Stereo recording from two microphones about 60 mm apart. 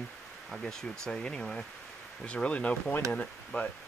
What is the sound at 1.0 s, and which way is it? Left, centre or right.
Speech, centre.